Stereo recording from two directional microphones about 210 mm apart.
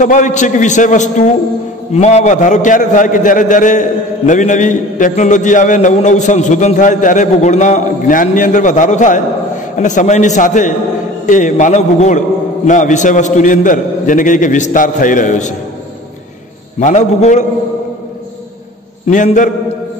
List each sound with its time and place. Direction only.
0.0 s a man's voice: 35° left (ahead or behind)
16.8 s a man's voice: 35° left (ahead or behind)
19.0 s a man's voice: 35° left (ahead or behind)